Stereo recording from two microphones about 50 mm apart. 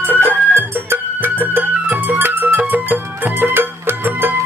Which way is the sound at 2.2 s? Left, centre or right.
Right.